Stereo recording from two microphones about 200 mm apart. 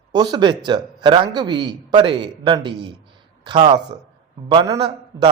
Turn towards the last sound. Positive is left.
turn(degrees=-20)  # may be behind; listen again after turning